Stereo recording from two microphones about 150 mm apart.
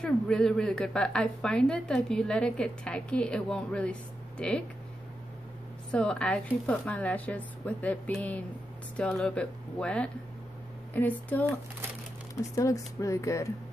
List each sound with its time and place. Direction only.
0.0 s a woman's voice: 5° left (ahead or behind)
5.9 s speech: 5° left (ahead or behind)